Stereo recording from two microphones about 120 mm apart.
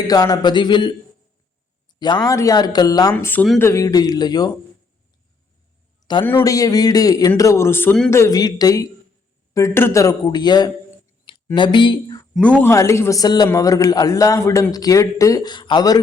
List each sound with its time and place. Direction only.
0.1 s speech: 30° left (ahead or behind)
2.0 s speech: 35° left (ahead or behind)
6.0 s a sound: 30° left (ahead or behind)
6.4 s a man's voice: 30° left (ahead or behind)
12.3 s speech: 10° left (ahead or behind)
12.7 s a man's voice: 25° left (ahead or behind)